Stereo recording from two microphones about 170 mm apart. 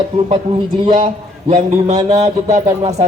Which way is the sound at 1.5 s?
40° right (ahead or behind).